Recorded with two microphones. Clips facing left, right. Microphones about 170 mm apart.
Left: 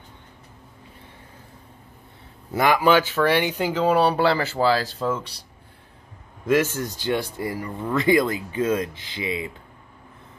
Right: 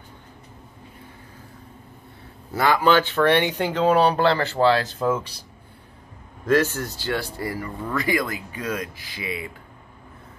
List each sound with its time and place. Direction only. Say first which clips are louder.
2.5 s speech: left 1 dB; 15° left (ahead or behind); by 5.2 s 5° right (ahead or behind)
6.4 s speech: even; 15° left (ahead or behind)